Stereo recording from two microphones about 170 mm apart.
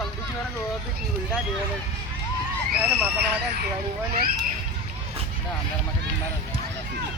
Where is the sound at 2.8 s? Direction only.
10° right (ahead or behind).